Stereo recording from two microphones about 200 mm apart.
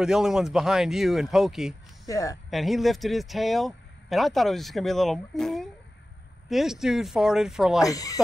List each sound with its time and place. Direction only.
0.0 s speech: 5° right (ahead or behind)
2.0 s speech: 15° left (ahead or behind)
2.5 s speech: centre (ahead or behind)
7.8 s speech: 15° left (ahead or behind)